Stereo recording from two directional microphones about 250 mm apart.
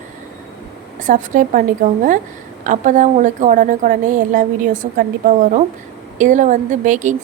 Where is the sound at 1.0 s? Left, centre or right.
Right.